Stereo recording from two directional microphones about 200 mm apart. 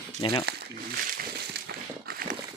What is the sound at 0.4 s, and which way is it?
Crumpling, 55° right (ahead or behind).